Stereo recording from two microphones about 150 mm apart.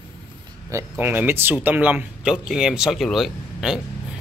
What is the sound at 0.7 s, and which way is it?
Speech, 15° right (ahead or behind).